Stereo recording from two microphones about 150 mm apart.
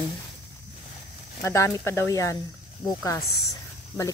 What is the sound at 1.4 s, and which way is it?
Speech, 20° left (ahead or behind).